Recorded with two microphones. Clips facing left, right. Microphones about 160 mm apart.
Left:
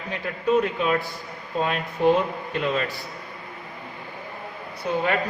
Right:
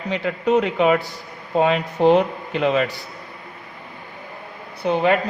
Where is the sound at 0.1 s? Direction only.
90° right.